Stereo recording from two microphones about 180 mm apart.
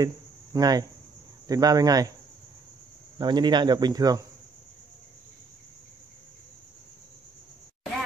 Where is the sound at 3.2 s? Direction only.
25° right (ahead or behind).